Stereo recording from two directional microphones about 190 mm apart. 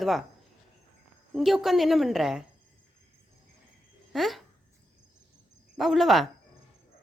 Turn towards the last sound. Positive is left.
turn(degrees=0)  # may be behind; listen again after turning